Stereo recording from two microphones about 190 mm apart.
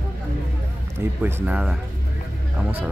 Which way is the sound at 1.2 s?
5° right (ahead or behind).